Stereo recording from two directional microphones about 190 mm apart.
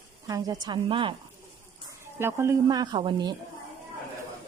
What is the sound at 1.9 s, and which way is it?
Speech, 15° right (ahead or behind).